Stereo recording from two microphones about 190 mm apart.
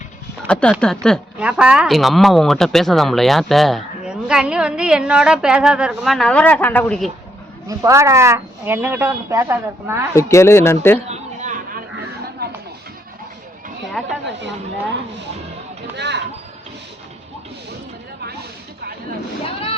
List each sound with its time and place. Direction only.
0.4 s a woman's voice: 5° left (ahead or behind)
7.7 s speech: 15° right (ahead or behind)
10.2 s speech: 15° left (ahead or behind)
11.1 s a sound: 40° right (ahead or behind)
12.4 s chatter: 60° right (ahead or behind)
14.0 s a woman's voice: centre (ahead or behind)
16.0 s speech: 65° right (ahead or behind)